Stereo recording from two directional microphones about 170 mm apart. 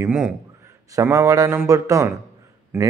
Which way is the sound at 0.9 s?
15° right (ahead or behind).